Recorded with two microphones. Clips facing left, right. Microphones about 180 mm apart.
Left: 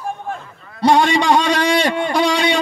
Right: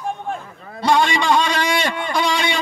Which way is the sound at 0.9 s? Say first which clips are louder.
Left 2 dB; 40° left (ahead or behind).